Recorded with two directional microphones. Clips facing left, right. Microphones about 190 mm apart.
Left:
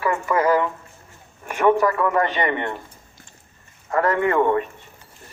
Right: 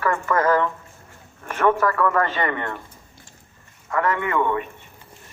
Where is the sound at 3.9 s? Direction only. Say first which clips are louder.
Left 3 dB; 35° left (ahead or behind).